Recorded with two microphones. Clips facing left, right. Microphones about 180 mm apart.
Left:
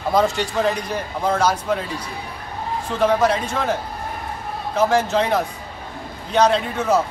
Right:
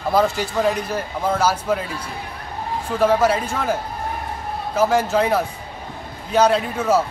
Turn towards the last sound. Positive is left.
turn(degrees=-5)  # may be behind; listen again after turning